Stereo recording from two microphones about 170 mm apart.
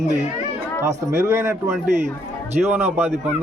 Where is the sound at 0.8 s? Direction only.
15° right (ahead or behind).